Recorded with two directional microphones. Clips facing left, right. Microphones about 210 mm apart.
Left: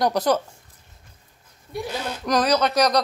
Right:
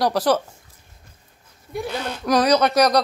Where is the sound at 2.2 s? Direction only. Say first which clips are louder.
Right 3 dB; 10° right (ahead or behind).